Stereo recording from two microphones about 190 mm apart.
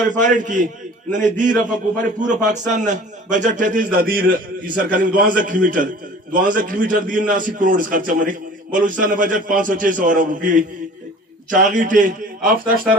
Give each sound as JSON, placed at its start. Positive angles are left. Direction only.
{"t": 0.2, "sound": "a man's voice", "side_deg": -40}